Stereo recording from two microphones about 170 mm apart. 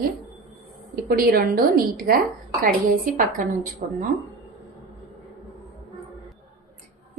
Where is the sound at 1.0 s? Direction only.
60° right (ahead or behind).